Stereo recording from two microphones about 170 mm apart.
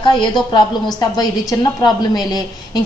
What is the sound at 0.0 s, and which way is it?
A woman's voice, 25° left (ahead or behind).